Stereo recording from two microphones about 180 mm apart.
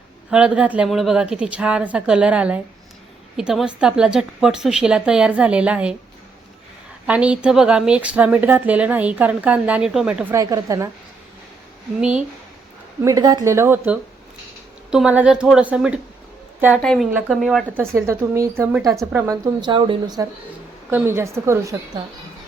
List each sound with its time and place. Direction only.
0.3 s a woman's voice: 5° right (ahead or behind)
7.1 s a woman's voice: 5° right (ahead or behind)
10.3 s a woman's voice: 20° right (ahead or behind)
11.9 s a woman's voice: 5° right (ahead or behind)
13.0 s a woman's voice: 20° right (ahead or behind)
16.8 s a woman's voice: 5° left (ahead or behind)
17.9 s a woman's voice: 15° right (ahead or behind)
20.9 s a woman's voice: 15° right (ahead or behind)